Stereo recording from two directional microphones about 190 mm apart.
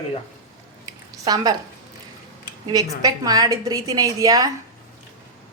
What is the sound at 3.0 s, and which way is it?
A woman's voice, 20° right (ahead or behind).